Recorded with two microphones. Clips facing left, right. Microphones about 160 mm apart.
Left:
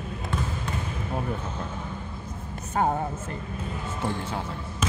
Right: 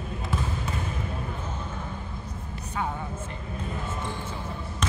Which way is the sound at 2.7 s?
45° left (ahead or behind).